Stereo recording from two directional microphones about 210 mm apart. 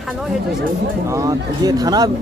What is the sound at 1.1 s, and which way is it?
Speech, 15° right (ahead or behind).